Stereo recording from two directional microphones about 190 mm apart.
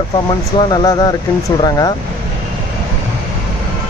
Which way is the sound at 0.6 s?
20° left (ahead or behind).